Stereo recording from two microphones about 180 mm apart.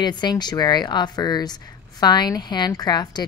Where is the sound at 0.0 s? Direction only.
25° left (ahead or behind).